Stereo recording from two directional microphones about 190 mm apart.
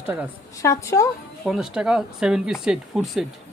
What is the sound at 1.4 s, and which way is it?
Speech, centre (ahead or behind).